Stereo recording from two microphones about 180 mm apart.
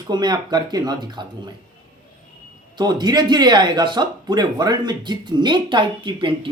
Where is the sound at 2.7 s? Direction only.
25° right (ahead or behind).